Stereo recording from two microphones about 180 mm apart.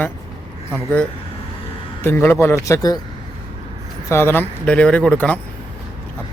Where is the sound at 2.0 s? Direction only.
10° left (ahead or behind).